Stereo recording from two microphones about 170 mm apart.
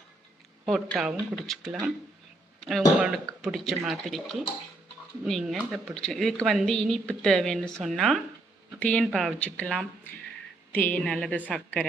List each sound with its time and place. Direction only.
0.6 s a woman's voice: centre (ahead or behind)
2.6 s a woman's voice: centre (ahead or behind)